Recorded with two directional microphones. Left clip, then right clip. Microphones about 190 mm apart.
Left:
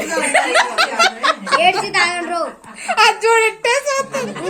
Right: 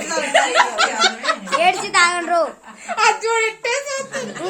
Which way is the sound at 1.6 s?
25° right (ahead or behind).